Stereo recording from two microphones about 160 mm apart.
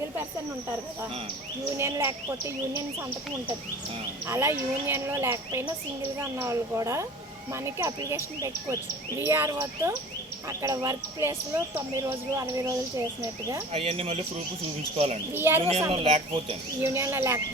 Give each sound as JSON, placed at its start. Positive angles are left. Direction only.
{"t": 1.7, "sound": "speech", "side_deg": -15}
{"t": 4.3, "sound": "speech", "side_deg": -15}
{"t": 13.7, "sound": "speech", "side_deg": -35}
{"t": 15.3, "sound": "speech", "side_deg": -15}
{"t": 15.9, "sound": "speech", "side_deg": -35}
{"t": 16.8, "sound": "speech", "side_deg": -15}